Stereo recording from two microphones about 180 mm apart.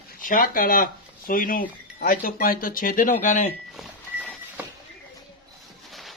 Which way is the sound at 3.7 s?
Centre (ahead or behind).